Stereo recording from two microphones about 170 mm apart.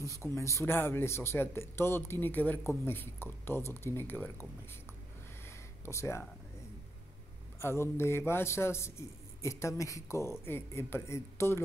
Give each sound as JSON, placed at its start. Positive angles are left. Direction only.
{"t": 0.2, "sound": "a man's voice", "side_deg": 15}
{"t": 5.9, "sound": "a man's voice", "side_deg": 15}
{"t": 7.6, "sound": "a man's voice", "side_deg": 15}